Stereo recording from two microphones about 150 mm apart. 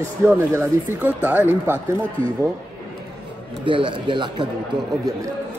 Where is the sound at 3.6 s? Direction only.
35° right (ahead or behind).